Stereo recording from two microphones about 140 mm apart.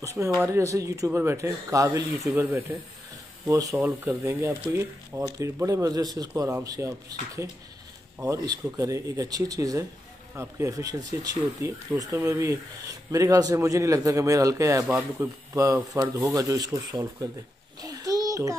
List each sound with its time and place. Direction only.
0.0 s a man's voice: 20° right (ahead or behind)
3.7 s a man's voice: 15° right (ahead or behind)
17.7 s a sound: 25° right (ahead or behind)